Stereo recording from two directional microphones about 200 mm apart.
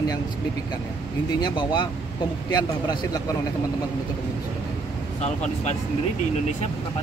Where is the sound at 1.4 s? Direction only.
20° left (ahead or behind).